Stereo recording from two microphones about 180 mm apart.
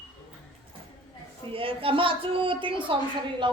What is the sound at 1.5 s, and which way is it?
A woman's voice, 30° right (ahead or behind).